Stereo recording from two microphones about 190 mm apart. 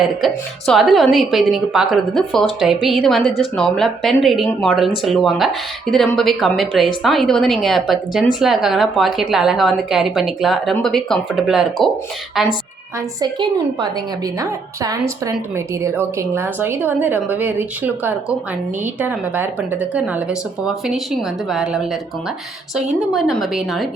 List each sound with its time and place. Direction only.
0.0 s a woman's voice: centre (ahead or behind)
13.1 s a woman's voice: 20° right (ahead or behind); by 23.9 s centre (ahead or behind)